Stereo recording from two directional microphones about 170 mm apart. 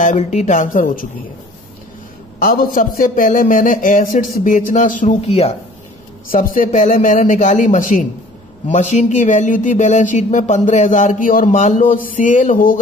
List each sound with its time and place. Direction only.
0.0 s speech: 45° left (ahead or behind)
2.3 s speech: 55° left (ahead or behind)